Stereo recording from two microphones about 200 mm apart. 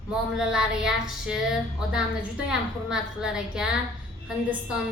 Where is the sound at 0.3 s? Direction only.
5° right (ahead or behind).